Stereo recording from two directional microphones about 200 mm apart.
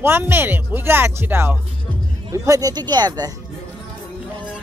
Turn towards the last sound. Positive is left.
turn(degrees=-20)  # may be behind; listen again after turning